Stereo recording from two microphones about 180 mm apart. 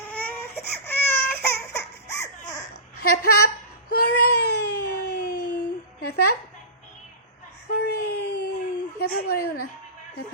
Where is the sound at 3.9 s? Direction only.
65° left (ahead or behind).